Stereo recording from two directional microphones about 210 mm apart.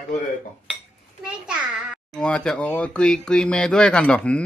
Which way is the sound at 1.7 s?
5° left (ahead or behind).